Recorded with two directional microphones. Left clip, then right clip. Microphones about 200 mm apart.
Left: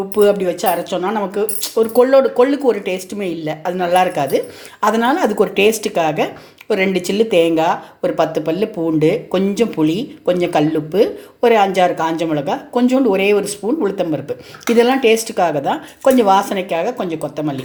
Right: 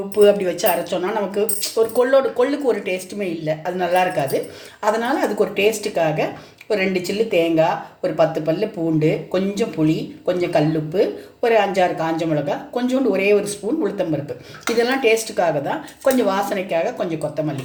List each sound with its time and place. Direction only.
0.2 s speech: 25° left (ahead or behind)